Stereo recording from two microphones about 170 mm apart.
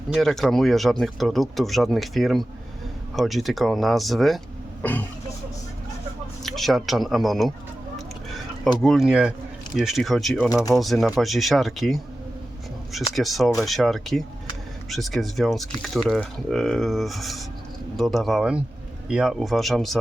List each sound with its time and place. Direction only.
0.1 s speech: centre (ahead or behind)
4.8 s speech: 10° left (ahead or behind)
6.4 s speech: centre (ahead or behind)
7.9 s a sound: centre (ahead or behind)
8.8 s speech: centre (ahead or behind)
10.5 s speech: 20° left (ahead or behind)
10.8 s speech: centre (ahead or behind)
13.1 s speech: centre (ahead or behind)